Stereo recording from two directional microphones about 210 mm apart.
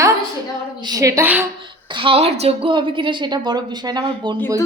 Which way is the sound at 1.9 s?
25° right (ahead or behind).